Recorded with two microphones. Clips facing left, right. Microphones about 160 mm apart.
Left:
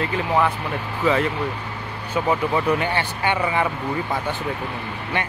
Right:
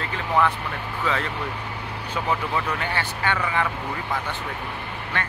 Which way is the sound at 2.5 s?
20° left (ahead or behind).